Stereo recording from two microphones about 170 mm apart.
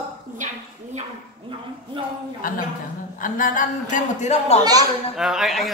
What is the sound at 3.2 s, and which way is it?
A man's voice, 50° left (ahead or behind).